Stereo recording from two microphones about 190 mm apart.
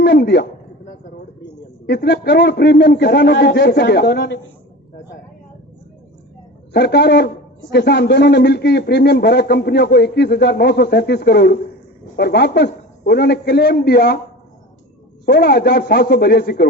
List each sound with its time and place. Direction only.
0.0 s a man's voice: 60° left (ahead or behind)
1.9 s a man's voice: 60° left (ahead or behind)
6.7 s a man's voice: 60° left (ahead or behind)
15.3 s a man's voice: 60° left (ahead or behind)